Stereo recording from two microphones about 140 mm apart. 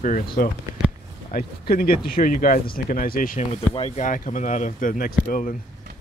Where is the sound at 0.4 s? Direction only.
90° left.